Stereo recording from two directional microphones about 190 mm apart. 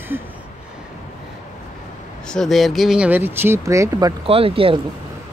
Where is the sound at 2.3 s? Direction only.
Centre (ahead or behind); by 4.1 s 15° right (ahead or behind).